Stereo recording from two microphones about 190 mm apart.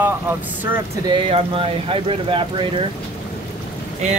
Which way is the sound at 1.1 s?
30° right (ahead or behind).